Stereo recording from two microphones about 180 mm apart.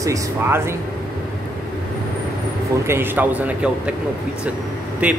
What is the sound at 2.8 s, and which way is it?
Speech, 10° right (ahead or behind).